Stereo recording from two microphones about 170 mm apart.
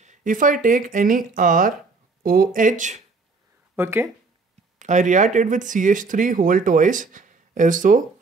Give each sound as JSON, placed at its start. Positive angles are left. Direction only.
{"t": 0.0, "sound": "speech", "side_deg": -45}
{"t": 3.7, "sound": "speech", "side_deg": -15}
{"t": 4.7, "sound": "speech", "side_deg": -45}